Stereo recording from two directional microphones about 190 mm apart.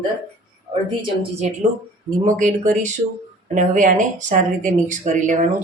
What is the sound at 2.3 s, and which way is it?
Speech, 40° right (ahead or behind).